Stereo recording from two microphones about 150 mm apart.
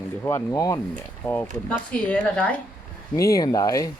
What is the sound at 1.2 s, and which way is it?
A woman's voice, 10° left (ahead or behind).